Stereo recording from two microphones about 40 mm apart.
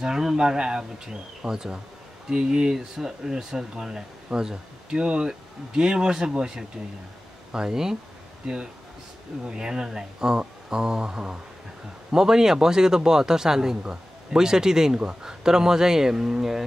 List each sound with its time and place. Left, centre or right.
0.0 s speech: centre
7.5 s speech: centre
9.5 s speech: centre
10.4 s mantra: centre
12.1 s speech: centre